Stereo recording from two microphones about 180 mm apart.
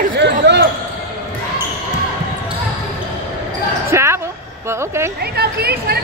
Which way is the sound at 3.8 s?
15° right (ahead or behind).